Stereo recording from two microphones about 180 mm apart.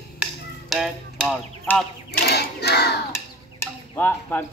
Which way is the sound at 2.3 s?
65° left (ahead or behind).